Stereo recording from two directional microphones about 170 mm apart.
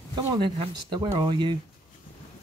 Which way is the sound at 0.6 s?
30° right (ahead or behind).